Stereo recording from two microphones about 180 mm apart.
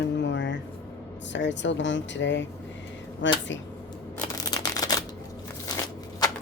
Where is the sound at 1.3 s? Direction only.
90° left.